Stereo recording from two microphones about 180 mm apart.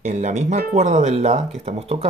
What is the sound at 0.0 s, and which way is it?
Speech, 40° right (ahead or behind).